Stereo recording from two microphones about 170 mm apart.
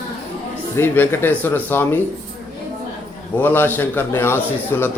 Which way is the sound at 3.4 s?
10° left (ahead or behind).